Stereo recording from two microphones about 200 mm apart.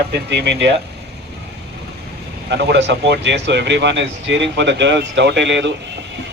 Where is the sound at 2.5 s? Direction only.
60° right (ahead or behind).